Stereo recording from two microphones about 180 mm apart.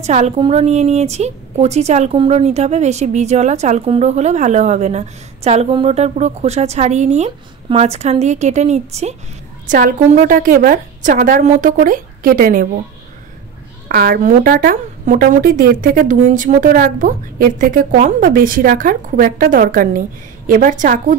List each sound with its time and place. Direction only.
0.0 s a woman's voice: 40° right (ahead or behind)
13.8 s a woman's voice: 55° right (ahead or behind)